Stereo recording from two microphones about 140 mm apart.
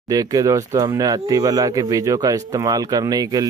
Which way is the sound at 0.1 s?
25° right (ahead or behind).